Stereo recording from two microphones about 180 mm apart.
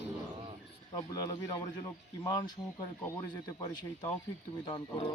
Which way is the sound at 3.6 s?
20° left (ahead or behind).